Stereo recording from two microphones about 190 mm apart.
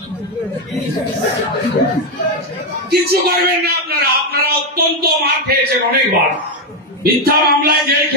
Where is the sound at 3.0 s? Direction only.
55° right (ahead or behind).